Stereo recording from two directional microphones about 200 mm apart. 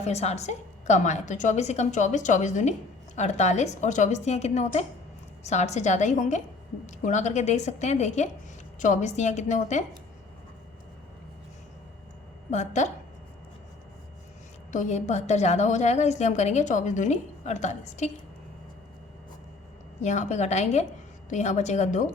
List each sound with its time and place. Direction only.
0.0 s a woman's voice: 35° left (ahead or behind)
12.5 s a woman's voice: 35° left (ahead or behind)
14.7 s a woman's voice: 35° left (ahead or behind)
20.0 s a woman's voice: 35° left (ahead or behind)